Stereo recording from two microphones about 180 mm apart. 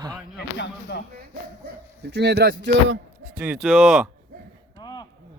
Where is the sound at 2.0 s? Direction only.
70° right (ahead or behind).